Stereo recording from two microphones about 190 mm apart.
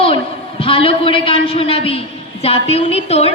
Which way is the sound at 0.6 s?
30° left (ahead or behind).